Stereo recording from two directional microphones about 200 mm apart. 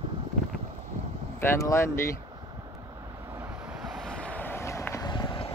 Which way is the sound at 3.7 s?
Centre (ahead or behind).